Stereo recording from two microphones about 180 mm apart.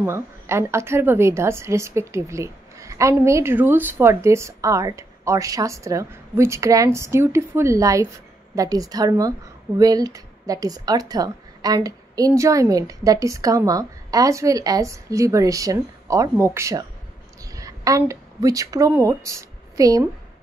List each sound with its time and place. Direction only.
0.0 s a woman's voice: 15° right (ahead or behind)